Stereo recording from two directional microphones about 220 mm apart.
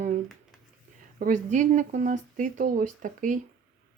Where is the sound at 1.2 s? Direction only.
35° right (ahead or behind).